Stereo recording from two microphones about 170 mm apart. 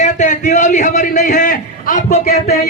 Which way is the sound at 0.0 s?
45° left (ahead or behind).